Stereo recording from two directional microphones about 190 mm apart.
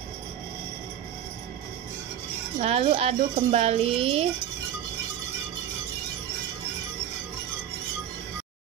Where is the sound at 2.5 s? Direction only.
35° right (ahead or behind).